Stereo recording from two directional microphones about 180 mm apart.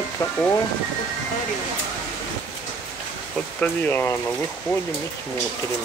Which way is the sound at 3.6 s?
10° left (ahead or behind).